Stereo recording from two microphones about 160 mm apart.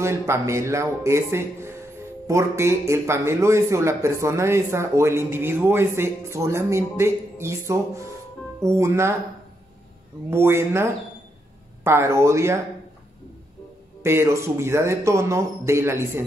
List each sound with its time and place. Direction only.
0.3 s speech: 20° right (ahead or behind)
10.3 s speech: 15° right (ahead or behind)
14.0 s speech: 15° right (ahead or behind)